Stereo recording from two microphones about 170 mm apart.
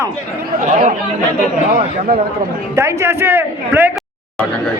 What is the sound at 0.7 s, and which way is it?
A man's voice, 45° right (ahead or behind).